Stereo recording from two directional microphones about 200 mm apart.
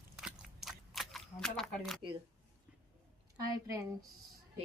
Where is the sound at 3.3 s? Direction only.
15° right (ahead or behind).